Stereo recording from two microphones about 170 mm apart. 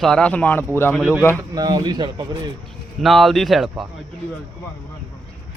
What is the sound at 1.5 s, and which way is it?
Speech, 25° right (ahead or behind).